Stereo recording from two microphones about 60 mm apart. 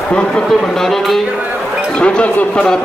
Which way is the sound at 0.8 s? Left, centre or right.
Centre.